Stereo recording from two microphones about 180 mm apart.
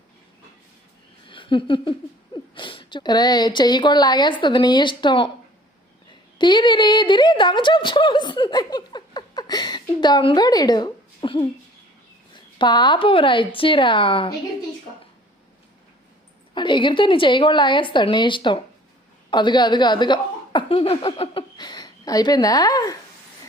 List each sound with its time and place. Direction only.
1.3 s a woman's voice: 25° left (ahead or behind)
12.5 s speech: 25° left (ahead or behind)
16.6 s speech: 25° left (ahead or behind)